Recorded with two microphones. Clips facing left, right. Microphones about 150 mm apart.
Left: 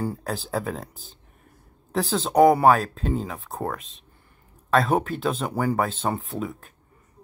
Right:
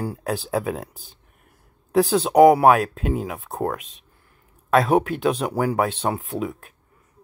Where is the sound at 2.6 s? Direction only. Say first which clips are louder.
Right 2 dB; 15° right (ahead or behind).